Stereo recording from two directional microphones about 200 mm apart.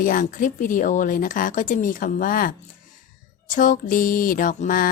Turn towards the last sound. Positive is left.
turn(degrees=45)  # may be behind; listen again after turning